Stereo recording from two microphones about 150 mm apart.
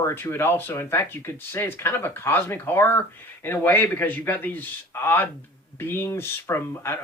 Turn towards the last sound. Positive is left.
turn(degrees=15)  # may be behind; listen again after turning